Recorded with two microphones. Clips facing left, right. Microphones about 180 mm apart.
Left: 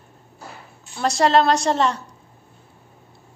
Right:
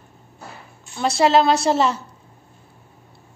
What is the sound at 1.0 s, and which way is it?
A woman's voice, centre (ahead or behind).